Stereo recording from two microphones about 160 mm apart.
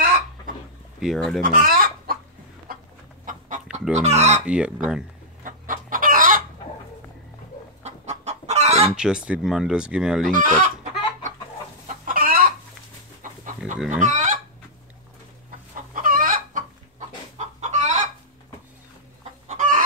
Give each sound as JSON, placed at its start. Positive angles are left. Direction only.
{"t": 0.9, "sound": "speech", "side_deg": 0}
{"t": 1.4, "sound": "chicken", "side_deg": -65}
{"t": 3.3, "sound": "chicken", "side_deg": -55}
{"t": 3.9, "sound": "speech", "side_deg": -45}
{"t": 4.5, "sound": "speech", "side_deg": -5}
{"t": 5.4, "sound": "chicken", "side_deg": -60}
{"t": 7.8, "sound": "chicken", "side_deg": -45}
{"t": 8.9, "sound": "speech", "side_deg": -5}
{"t": 10.3, "sound": "speech", "side_deg": -55}
{"t": 11.9, "sound": "chicken", "side_deg": -60}
{"t": 13.8, "sound": "fowl", "side_deg": -50}
{"t": 15.9, "sound": "chicken", "side_deg": -60}
{"t": 19.4, "sound": "chicken", "side_deg": -55}